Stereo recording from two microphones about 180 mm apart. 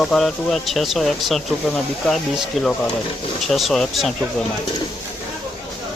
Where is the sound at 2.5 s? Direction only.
Centre (ahead or behind).